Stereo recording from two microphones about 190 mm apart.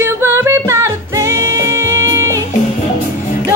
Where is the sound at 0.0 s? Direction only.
15° right (ahead or behind).